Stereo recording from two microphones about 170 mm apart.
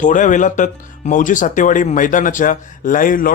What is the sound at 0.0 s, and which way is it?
Speech, 50° left (ahead or behind).